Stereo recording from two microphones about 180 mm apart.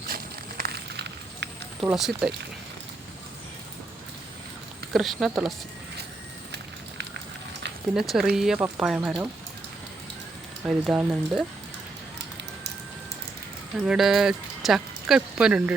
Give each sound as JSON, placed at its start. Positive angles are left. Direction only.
{"t": 0.1, "sound": "bicycle", "side_deg": -55}
{"t": 1.8, "sound": "speech", "side_deg": -5}
{"t": 4.9, "sound": "speech", "side_deg": 0}
{"t": 7.9, "sound": "speech", "side_deg": 0}
{"t": 10.7, "sound": "speech", "side_deg": -5}
{"t": 13.8, "sound": "speech", "side_deg": 0}